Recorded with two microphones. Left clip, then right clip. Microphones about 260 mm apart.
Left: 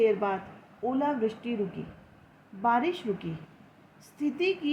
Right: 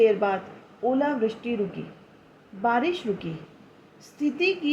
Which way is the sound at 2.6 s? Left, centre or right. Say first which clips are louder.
Right 2 dB; left.